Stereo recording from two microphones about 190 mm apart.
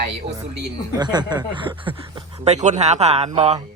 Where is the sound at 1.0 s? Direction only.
20° right (ahead or behind).